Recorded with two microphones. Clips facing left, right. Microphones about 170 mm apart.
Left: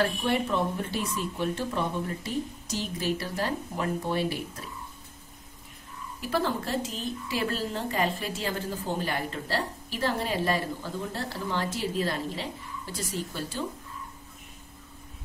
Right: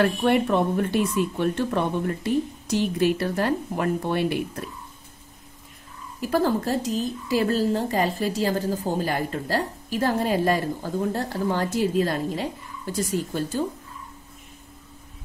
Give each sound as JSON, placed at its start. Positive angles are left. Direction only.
{"t": 0.0, "sound": "speech", "side_deg": -60}
{"t": 6.2, "sound": "a woman's voice", "side_deg": -40}